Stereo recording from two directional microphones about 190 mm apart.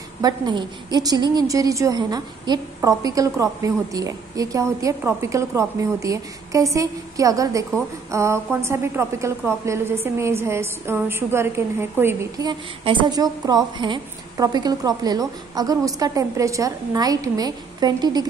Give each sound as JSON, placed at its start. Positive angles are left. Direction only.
{"t": 0.2, "sound": "a woman's voice", "side_deg": -20}